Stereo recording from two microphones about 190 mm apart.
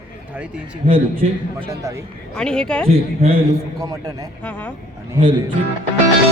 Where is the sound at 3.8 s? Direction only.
20° right (ahead or behind).